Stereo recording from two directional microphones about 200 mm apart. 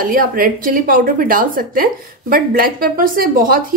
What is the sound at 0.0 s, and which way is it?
A woman's voice, 45° right (ahead or behind).